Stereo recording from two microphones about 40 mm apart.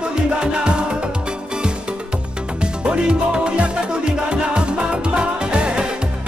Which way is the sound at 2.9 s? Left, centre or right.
Right.